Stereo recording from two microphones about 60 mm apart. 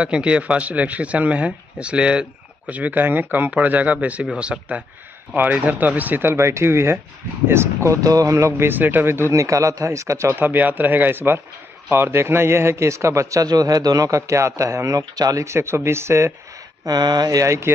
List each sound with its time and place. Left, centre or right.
0.0 s speech: centre
2.7 s speech: right
6.3 s a man's voice: right
8.5 s speech: right
9.3 s a man's voice: right
10.4 s a man's voice: right
15.4 s speech: right
16.8 s speech: right
17.5 s speech: right